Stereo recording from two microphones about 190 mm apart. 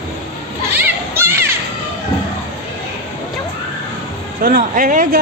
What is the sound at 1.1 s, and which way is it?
Music, 10° right (ahead or behind).